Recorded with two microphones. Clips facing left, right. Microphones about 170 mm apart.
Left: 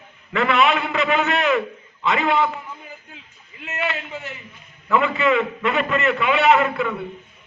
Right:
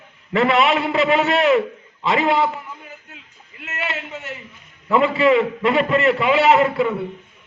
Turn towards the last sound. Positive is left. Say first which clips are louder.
# right 2 dB
turn(degrees=-30)  # may be behind; listen again after turning